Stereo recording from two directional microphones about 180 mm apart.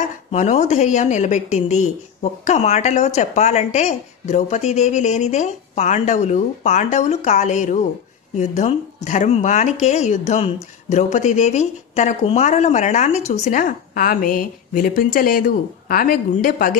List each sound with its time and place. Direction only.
0.3 s a woman's voice: 40° left (ahead or behind)